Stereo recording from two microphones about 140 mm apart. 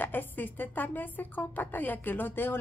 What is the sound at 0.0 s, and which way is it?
A woman's voice, 15° left (ahead or behind).